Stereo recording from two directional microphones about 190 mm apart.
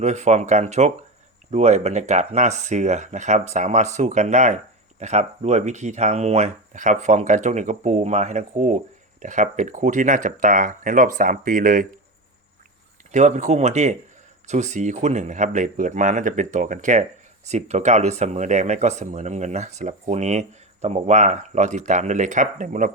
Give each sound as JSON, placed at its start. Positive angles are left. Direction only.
{"t": 0.0, "sound": "speech", "side_deg": -35}
{"t": 13.1, "sound": "speech", "side_deg": -40}